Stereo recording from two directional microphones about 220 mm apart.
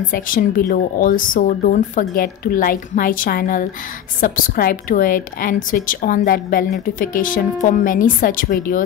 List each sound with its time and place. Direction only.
0.1 s a woman's voice: 40° left (ahead or behind)